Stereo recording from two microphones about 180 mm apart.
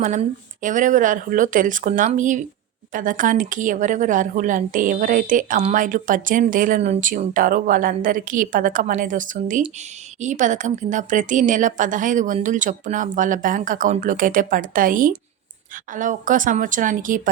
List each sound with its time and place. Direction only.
0.0 s speech: 45° right (ahead or behind)